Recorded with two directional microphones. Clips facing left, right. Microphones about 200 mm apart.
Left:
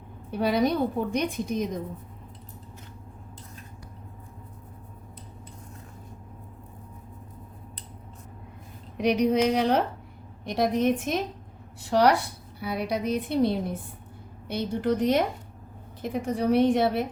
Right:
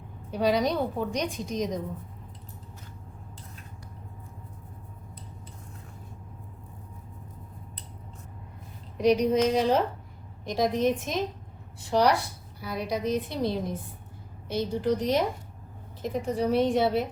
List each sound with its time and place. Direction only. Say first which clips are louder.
0.3 s a woman's voice: left 1 dB; 55° left (ahead or behind)
9.0 s a woman's voice: even; 65° left (ahead or behind)
16.5 s a woman's voice: left 3 dB; 60° left (ahead or behind)